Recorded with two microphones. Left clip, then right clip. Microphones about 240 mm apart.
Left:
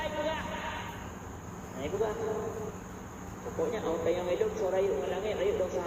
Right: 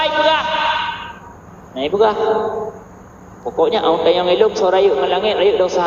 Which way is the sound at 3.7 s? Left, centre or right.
Right.